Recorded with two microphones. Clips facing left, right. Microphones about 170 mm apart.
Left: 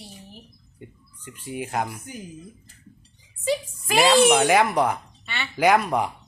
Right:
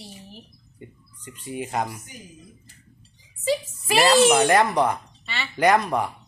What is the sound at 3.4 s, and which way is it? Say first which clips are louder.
A woman's voice: right 1 dB; centre (ahead or behind).